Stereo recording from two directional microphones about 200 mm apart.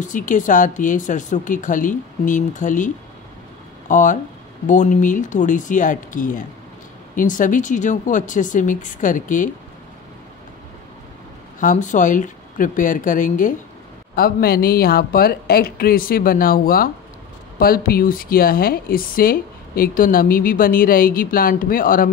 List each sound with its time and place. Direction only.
0.0 s speech: 40° left (ahead or behind)
3.9 s speech: 40° left (ahead or behind)
11.6 s a woman's voice: 40° left (ahead or behind)